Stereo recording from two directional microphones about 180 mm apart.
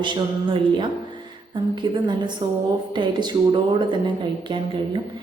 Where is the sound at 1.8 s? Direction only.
25° right (ahead or behind).